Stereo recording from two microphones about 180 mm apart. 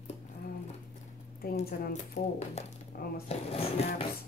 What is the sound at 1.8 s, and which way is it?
Speech, 55° left (ahead or behind).